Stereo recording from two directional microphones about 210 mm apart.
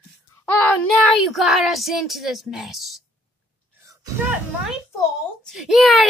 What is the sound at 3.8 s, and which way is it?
Music, 15° right (ahead or behind).